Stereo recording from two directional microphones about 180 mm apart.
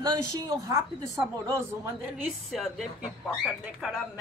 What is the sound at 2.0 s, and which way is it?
Speech, centre (ahead or behind).